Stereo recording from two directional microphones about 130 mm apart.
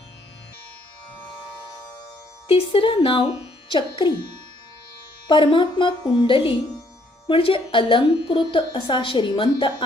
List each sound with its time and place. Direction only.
2.5 s a woman's voice: 45° left (ahead or behind)
5.3 s speech: 40° left (ahead or behind)